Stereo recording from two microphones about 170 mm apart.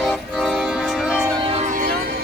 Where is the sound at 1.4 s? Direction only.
30° right (ahead or behind).